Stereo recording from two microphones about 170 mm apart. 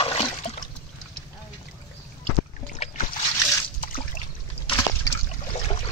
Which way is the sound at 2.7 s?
40° left (ahead or behind).